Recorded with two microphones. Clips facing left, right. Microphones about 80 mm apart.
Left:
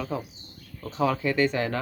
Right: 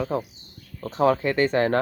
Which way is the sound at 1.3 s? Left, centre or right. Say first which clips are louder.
Right 4 dB; right.